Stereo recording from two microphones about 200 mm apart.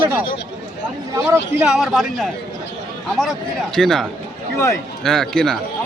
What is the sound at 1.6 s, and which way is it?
Speech, centre (ahead or behind).